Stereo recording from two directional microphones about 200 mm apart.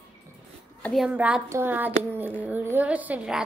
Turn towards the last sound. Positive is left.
turn(degrees=-5)  # may be behind; listen again after turning